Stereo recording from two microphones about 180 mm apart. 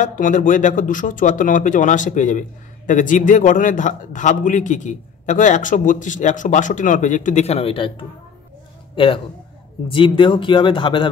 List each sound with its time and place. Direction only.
0.0 s a man's voice: 45° left (ahead or behind); by 11.1 s 25° left (ahead or behind)